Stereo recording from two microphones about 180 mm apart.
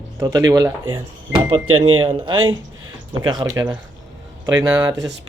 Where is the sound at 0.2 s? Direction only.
20° right (ahead or behind).